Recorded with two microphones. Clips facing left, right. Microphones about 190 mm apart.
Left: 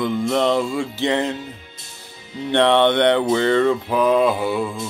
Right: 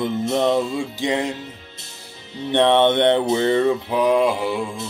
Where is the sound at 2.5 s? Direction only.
20° right (ahead or behind).